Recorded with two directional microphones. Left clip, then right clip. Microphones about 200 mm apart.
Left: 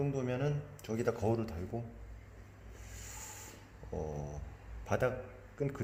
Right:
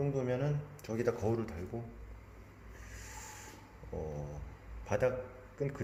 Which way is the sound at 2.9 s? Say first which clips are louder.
Even; 20° left (ahead or behind).